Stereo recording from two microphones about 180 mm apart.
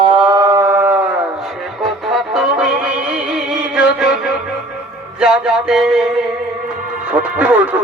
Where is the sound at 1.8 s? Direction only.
Centre (ahead or behind).